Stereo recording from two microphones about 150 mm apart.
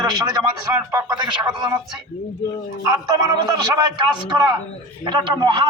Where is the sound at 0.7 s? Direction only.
20° right (ahead or behind).